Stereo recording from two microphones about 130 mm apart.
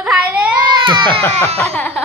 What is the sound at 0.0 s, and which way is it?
Baby cry, 10° right (ahead or behind).